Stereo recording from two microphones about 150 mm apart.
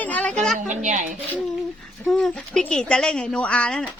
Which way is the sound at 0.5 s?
55° right (ahead or behind).